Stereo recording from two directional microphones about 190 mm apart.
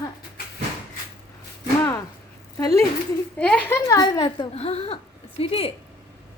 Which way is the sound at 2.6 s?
15° left (ahead or behind).